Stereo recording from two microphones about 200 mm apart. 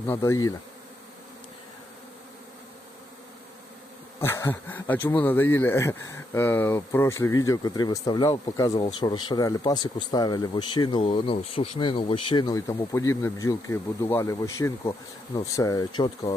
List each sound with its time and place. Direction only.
0.1 s speech: 15° left (ahead or behind)
4.2 s speech: 10° left (ahead or behind)